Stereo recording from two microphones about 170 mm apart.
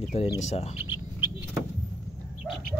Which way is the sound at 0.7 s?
15° right (ahead or behind).